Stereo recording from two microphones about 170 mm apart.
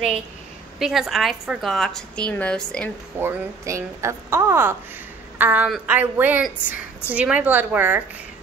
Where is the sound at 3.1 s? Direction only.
15° right (ahead or behind).